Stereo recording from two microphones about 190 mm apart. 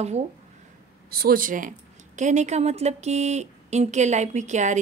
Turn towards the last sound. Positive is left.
turn(degrees=-40)  # may be behind; listen again after turning